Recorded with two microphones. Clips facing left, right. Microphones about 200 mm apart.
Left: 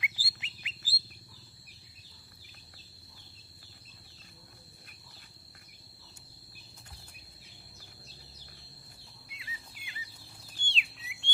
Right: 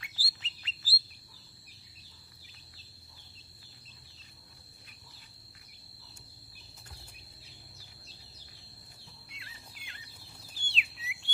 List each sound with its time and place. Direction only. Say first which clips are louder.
0.0 s bird: left 5 dB; 15° left (ahead or behind)
9.3 s a sound: left 6 dB; centre (ahead or behind)
10.5 s bird: even; centre (ahead or behind)